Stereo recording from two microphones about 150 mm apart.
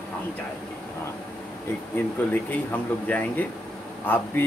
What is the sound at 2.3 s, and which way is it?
Speech, 10° left (ahead or behind).